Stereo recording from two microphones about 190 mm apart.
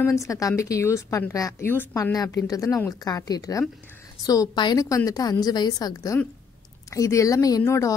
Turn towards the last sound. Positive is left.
turn(degrees=15)  # may be behind; listen again after turning